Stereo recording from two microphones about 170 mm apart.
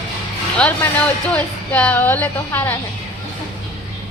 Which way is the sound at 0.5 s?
10° left (ahead or behind).